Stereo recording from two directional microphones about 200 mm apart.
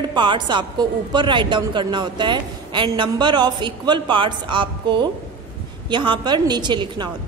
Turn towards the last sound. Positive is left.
turn(degrees=-20)  # may be behind; listen again after turning